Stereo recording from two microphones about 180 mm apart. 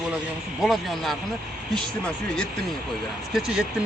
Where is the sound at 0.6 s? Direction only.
Centre (ahead or behind).